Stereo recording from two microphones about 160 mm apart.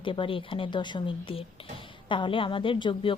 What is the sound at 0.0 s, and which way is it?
A woman's voice, 30° left (ahead or behind).